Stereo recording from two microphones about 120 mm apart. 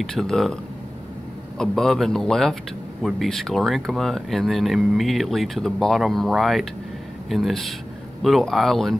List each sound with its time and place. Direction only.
0.0 s speech: 5° left (ahead or behind)
1.6 s speech: 5° left (ahead or behind)